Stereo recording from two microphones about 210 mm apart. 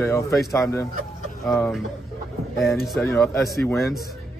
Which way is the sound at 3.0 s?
15° left (ahead or behind).